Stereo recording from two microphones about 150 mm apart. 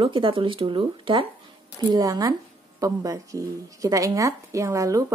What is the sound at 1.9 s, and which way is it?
Speech, 25° right (ahead or behind).